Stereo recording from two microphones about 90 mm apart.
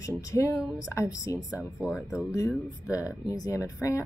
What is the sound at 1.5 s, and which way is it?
Speech, 15° right (ahead or behind).